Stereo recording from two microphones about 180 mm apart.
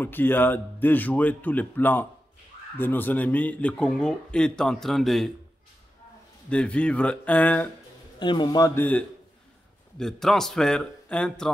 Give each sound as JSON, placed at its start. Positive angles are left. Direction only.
{"t": 0.0, "sound": "speech", "side_deg": 10}
{"t": 6.5, "sound": "speech", "side_deg": 5}
{"t": 8.2, "sound": "a man's voice", "side_deg": 25}